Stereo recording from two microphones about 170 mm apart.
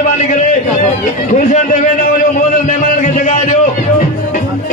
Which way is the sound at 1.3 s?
45° left (ahead or behind).